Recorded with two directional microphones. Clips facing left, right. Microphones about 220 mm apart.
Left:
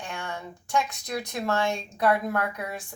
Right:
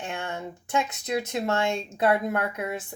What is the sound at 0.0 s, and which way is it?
A woman's voice, 25° right (ahead or behind).